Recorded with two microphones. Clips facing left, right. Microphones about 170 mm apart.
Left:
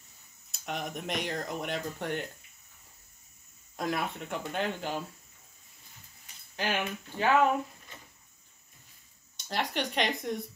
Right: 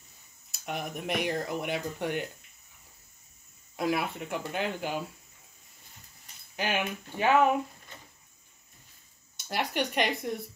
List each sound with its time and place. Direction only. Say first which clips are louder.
0.5 s speech: right 1 dB; 5° right (ahead or behind)
3.7 s speech: right 3 dB; 5° right (ahead or behind)
6.5 s speech: right 1 dB; 15° right (ahead or behind)
9.5 s speech: right 2 dB; 10° right (ahead or behind)